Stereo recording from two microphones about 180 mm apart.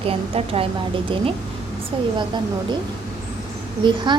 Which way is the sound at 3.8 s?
25° right (ahead or behind).